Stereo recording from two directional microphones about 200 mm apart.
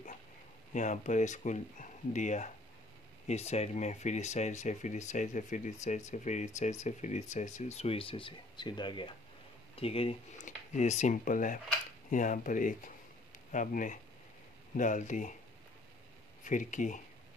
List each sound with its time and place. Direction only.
0.7 s speech: 40° left (ahead or behind)
16.4 s speech: 40° left (ahead or behind)